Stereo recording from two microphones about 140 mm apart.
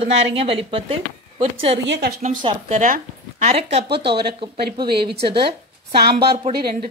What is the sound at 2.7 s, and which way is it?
Speech, 70° right (ahead or behind).